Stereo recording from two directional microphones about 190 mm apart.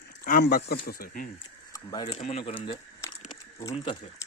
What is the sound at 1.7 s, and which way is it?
Speech, 20° left (ahead or behind).